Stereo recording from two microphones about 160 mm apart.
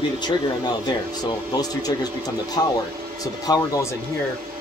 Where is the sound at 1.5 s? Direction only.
25° left (ahead or behind).